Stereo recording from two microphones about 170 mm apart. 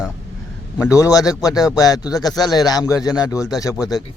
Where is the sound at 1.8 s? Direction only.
20° left (ahead or behind).